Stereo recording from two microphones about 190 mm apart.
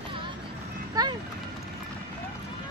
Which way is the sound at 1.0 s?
20° right (ahead or behind).